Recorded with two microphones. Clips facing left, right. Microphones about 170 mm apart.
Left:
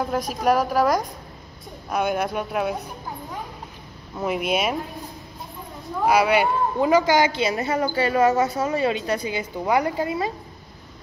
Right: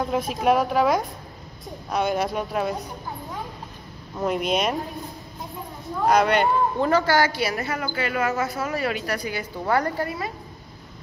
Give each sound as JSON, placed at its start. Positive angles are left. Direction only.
{"t": 0.0, "sound": "a woman's voice", "side_deg": 0}
{"t": 4.2, "sound": "a woman's voice", "side_deg": 5}
{"t": 6.0, "sound": "a woman's voice", "side_deg": 5}